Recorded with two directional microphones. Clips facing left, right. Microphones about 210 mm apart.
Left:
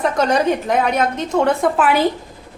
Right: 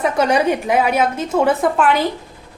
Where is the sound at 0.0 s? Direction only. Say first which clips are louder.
Right 1 dB; 10° right (ahead or behind).